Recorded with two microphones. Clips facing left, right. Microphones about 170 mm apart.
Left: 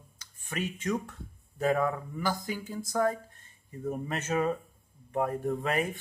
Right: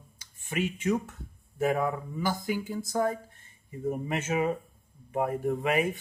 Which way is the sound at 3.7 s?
10° right (ahead or behind).